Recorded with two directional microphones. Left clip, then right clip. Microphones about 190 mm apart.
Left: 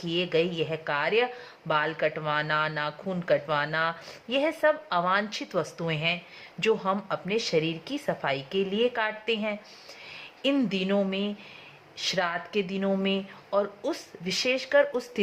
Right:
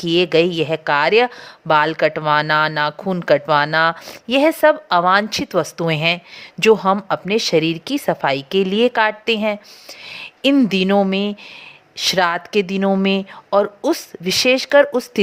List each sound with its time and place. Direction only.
0.0 s a woman's voice: 50° right (ahead or behind)